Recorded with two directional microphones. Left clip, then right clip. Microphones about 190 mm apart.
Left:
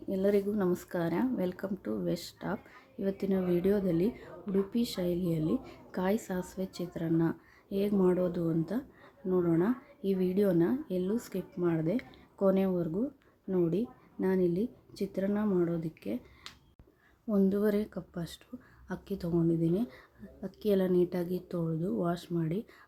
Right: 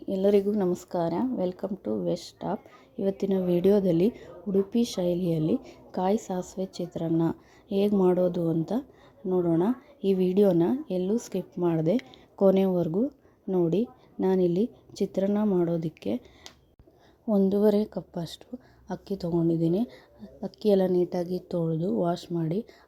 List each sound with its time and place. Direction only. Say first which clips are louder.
0.1 s a woman's voice: right 6 dB; 25° right (ahead or behind)
17.3 s speech: right 6 dB; 20° right (ahead or behind)